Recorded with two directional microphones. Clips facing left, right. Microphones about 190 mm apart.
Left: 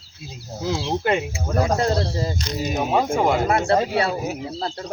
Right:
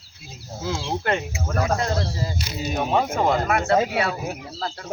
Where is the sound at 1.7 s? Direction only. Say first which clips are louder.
Left 4 dB; 30° left (ahead or behind).